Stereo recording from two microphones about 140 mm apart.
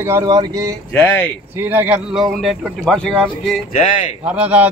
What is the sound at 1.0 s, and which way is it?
Speech, 15° left (ahead or behind).